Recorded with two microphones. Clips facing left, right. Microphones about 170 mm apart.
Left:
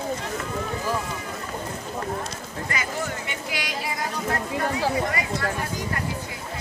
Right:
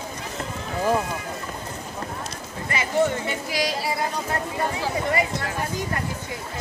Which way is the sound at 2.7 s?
30° right (ahead or behind).